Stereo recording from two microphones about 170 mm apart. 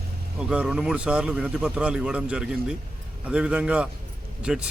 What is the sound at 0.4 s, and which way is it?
A man's voice, 5° right (ahead or behind).